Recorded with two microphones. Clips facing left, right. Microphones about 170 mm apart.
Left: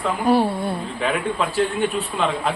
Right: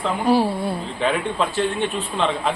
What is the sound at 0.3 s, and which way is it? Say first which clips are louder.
Speech: even; centre (ahead or behind).